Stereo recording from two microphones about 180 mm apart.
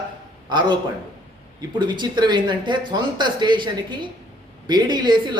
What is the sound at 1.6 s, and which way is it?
Speech, 25° right (ahead or behind).